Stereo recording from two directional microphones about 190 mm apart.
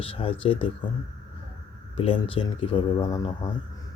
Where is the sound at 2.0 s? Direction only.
30° left (ahead or behind).